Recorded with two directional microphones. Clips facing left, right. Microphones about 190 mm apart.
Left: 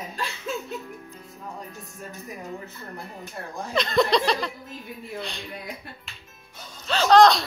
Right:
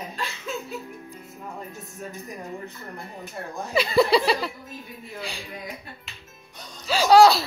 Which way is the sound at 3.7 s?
5° right (ahead or behind).